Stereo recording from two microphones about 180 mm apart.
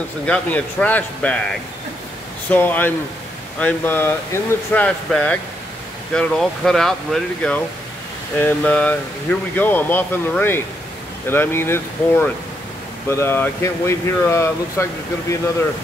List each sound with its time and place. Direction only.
0.3 s speech: 10° left (ahead or behind)
2.5 s speech: 10° left (ahead or behind)